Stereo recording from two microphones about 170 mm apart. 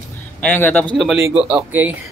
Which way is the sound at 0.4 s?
10° left (ahead or behind).